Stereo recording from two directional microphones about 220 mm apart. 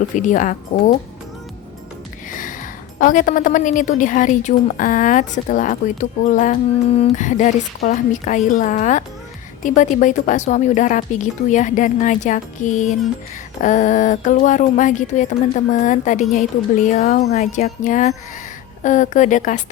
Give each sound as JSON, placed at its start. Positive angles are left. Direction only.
{"t": 0.2, "sound": "a woman's voice", "side_deg": 35}
{"t": 2.3, "sound": "a woman's voice", "side_deg": 35}